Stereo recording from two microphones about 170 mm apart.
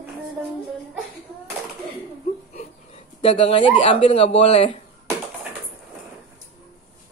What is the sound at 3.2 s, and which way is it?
Speech, 35° left (ahead or behind).